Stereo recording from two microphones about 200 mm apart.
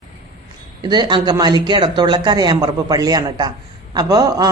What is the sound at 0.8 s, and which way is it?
A man's voice, 25° right (ahead or behind).